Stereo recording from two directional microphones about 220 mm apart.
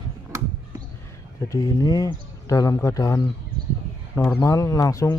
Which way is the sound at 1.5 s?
15° left (ahead or behind).